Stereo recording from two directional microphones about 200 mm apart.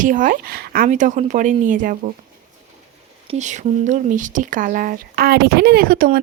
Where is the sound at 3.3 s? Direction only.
35° right (ahead or behind).